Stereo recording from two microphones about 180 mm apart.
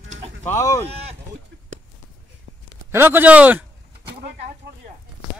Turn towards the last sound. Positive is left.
turn(degrees=-10)  # may be behind; listen again after turning